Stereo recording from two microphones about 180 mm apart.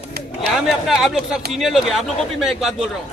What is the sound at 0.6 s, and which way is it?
A man's voice, centre (ahead or behind).